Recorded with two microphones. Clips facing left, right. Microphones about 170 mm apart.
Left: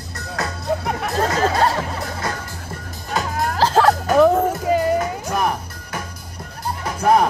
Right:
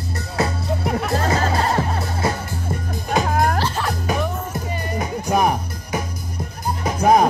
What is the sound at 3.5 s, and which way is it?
Music, 90° left.